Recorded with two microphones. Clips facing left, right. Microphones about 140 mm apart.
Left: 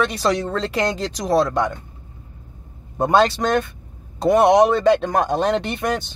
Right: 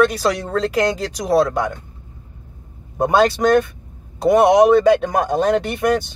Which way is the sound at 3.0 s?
5° right (ahead or behind).